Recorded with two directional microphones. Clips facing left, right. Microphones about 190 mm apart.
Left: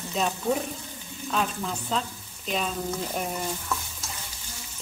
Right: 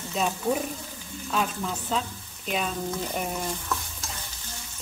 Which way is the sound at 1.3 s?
5° right (ahead or behind).